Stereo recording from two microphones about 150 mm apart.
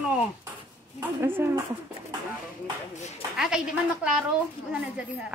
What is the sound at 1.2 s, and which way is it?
Speech, 15° right (ahead or behind).